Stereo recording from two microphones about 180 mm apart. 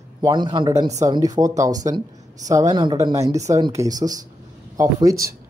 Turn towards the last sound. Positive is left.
turn(degrees=-20)  # may be behind; listen again after turning